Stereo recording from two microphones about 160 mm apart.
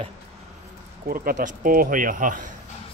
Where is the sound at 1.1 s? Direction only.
65° right (ahead or behind).